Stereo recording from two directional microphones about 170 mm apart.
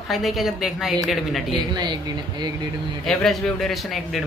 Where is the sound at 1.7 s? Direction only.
25° right (ahead or behind).